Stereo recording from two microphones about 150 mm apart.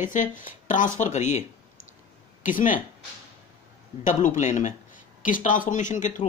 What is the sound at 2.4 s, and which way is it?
Speech, 60° left (ahead or behind).